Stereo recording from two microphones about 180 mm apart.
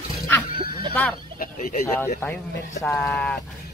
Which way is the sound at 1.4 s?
50° left (ahead or behind).